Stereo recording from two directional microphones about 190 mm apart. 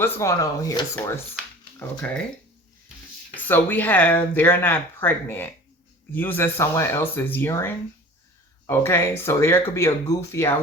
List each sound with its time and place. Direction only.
0.0 s speech: 15° left (ahead or behind)
3.3 s speech: 10° left (ahead or behind)